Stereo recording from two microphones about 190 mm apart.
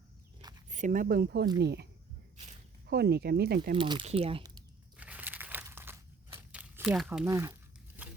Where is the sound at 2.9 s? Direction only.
55° right (ahead or behind).